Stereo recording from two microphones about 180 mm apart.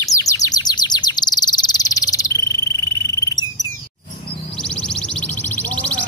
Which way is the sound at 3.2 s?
20° left (ahead or behind).